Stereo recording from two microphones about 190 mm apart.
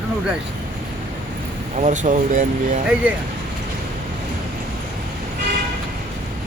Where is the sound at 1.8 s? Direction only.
40° right (ahead or behind).